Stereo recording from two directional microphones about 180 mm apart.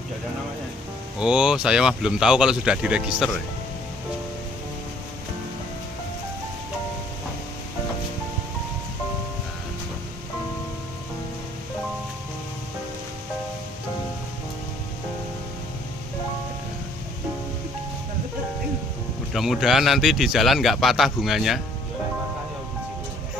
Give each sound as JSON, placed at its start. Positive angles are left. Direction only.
{"t": 1.2, "sound": "speech", "side_deg": -5}
{"t": 19.3, "sound": "speech", "side_deg": 0}